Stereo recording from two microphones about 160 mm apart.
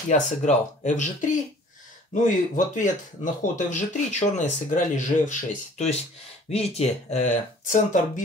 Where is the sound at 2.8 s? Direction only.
50° left (ahead or behind).